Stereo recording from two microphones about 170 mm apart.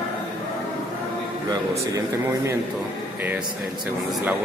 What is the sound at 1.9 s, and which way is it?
Speech, 20° right (ahead or behind).